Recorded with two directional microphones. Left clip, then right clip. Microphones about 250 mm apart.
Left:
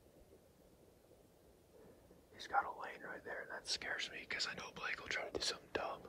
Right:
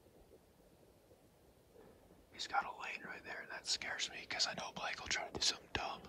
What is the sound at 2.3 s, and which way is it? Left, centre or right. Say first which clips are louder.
Speech: left 1 dB; right.